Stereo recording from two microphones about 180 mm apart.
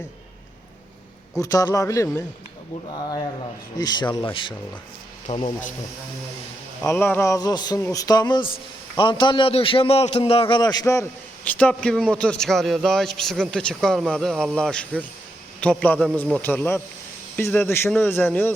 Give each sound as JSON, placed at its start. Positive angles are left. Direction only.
{"t": 1.4, "sound": "a man's voice", "side_deg": 20}
{"t": 6.8, "sound": "a man's voice", "side_deg": 10}
{"t": 11.4, "sound": "a man's voice", "side_deg": 5}